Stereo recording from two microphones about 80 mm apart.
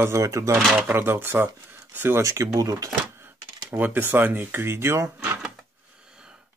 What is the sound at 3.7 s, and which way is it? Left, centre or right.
Speech, right.